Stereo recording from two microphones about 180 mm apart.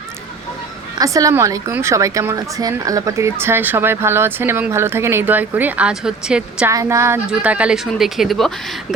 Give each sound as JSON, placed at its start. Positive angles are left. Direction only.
{"t": 0.9, "sound": "a woman's voice", "side_deg": -20}
{"t": 6.7, "sound": "a woman's voice", "side_deg": -15}